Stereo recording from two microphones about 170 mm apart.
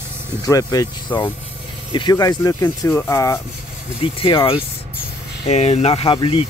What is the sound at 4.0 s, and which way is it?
Speech, 30° left (ahead or behind).